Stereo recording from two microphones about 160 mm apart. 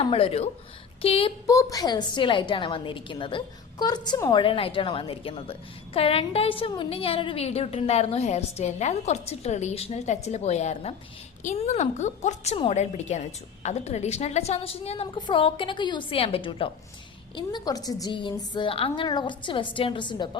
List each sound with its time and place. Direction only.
0.0 s a woman's voice: 35° left (ahead or behind)
1.5 s a woman's voice: 20° left (ahead or behind)